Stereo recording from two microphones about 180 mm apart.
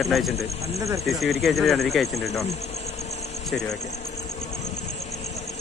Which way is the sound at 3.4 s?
Centre (ahead or behind).